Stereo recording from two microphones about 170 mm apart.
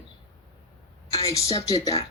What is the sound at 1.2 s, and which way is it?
Speech, 20° left (ahead or behind).